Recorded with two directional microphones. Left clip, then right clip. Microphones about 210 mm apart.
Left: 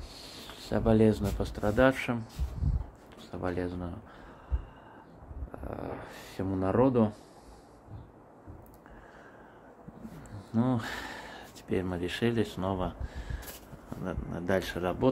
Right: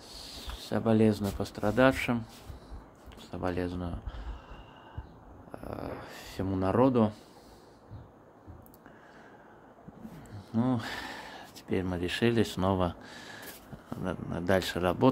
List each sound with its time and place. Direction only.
0.1 s a sound: 5° right (ahead or behind)
1.2 s speech: 10° right (ahead or behind)
5.6 s speech: 10° right (ahead or behind)
10.5 s speech: 5° right (ahead or behind); by 15.0 s 25° right (ahead or behind)